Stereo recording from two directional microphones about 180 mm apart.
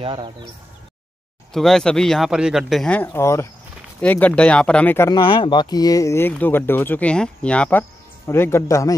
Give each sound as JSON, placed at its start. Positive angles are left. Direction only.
{"t": 0.0, "sound": "speech", "side_deg": -30}
{"t": 1.5, "sound": "speech", "side_deg": 0}
{"t": 5.2, "sound": "speech", "side_deg": 25}